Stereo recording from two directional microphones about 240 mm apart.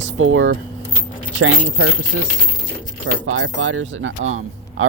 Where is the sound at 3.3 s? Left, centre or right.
Right.